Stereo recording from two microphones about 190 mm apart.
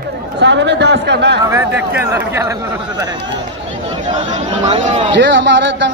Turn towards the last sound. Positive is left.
turn(degrees=-70)  # may be behind; listen again after turning